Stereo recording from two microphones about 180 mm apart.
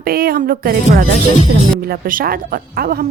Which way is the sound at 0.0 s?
55° right (ahead or behind).